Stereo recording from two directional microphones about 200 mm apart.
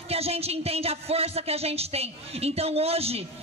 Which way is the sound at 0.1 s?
30° right (ahead or behind).